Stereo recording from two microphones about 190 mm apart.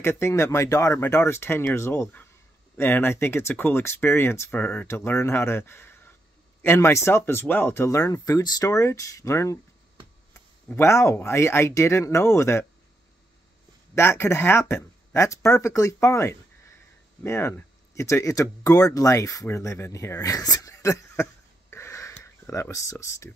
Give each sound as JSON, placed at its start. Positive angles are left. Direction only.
{"t": 0.0, "sound": "speech", "side_deg": 10}
{"t": 10.7, "sound": "speech", "side_deg": 15}
{"t": 13.9, "sound": "speech", "side_deg": 15}